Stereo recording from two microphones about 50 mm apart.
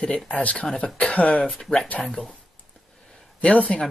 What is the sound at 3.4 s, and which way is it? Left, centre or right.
Speech, left.